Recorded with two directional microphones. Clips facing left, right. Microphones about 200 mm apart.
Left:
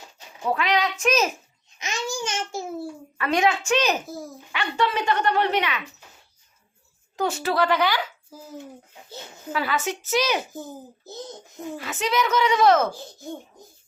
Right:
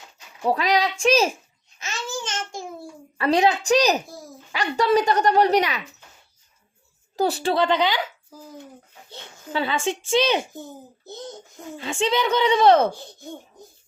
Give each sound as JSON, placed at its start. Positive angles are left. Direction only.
{"t": 0.4, "sound": "speech", "side_deg": -35}
{"t": 1.8, "sound": "babbling", "side_deg": 15}
{"t": 3.2, "sound": "speech", "side_deg": -35}
{"t": 4.0, "sound": "dog", "side_deg": 0}
{"t": 4.5, "sound": "speech", "side_deg": -40}
{"t": 7.2, "sound": "a woman's voice", "side_deg": -35}
{"t": 9.5, "sound": "a woman's voice", "side_deg": -25}
{"t": 10.5, "sound": "a child's voice", "side_deg": 0}
{"t": 11.8, "sound": "speech", "side_deg": -25}
{"t": 12.9, "sound": "a child's voice", "side_deg": 0}